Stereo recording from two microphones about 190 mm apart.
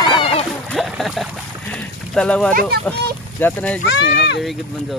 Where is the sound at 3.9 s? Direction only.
65° left (ahead or behind).